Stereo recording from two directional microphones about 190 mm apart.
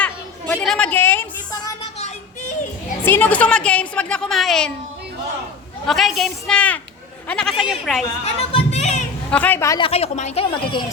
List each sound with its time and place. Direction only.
0.0 s chatter: 10° left (ahead or behind)
3.0 s a woman's voice: 10° left (ahead or behind)
5.8 s speech: centre (ahead or behind)
8.2 s speech: 30° left (ahead or behind)
9.3 s a woman's voice: 10° left (ahead or behind)
9.8 s speech: 35° left (ahead or behind)